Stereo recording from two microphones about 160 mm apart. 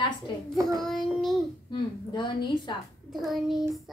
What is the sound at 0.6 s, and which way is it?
Child singing, 20° right (ahead or behind).